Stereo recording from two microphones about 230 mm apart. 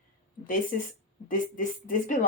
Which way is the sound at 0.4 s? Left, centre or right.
Left.